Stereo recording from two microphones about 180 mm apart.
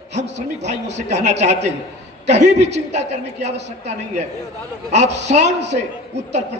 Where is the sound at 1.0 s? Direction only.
40° right (ahead or behind).